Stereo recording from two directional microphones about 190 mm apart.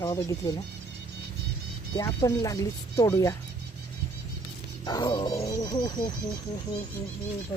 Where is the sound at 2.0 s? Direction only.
20° left (ahead or behind).